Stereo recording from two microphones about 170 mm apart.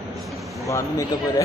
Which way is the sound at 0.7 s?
20° left (ahead or behind).